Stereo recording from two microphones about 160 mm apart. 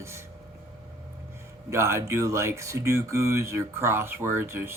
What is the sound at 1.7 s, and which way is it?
Speech, 15° right (ahead or behind).